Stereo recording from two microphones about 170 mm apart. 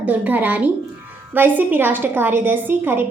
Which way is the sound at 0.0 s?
10° right (ahead or behind).